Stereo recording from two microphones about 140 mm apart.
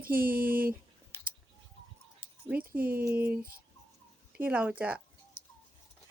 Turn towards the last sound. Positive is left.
turn(degrees=-10)  # may be behind; listen again after turning